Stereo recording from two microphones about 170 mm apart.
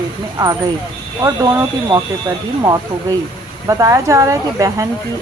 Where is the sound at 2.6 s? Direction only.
20° right (ahead or behind).